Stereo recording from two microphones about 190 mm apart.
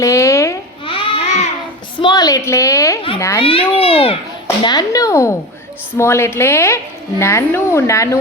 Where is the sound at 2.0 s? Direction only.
20° left (ahead or behind).